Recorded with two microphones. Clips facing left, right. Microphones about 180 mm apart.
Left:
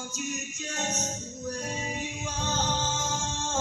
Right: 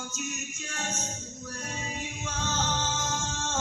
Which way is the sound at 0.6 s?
20° left (ahead or behind).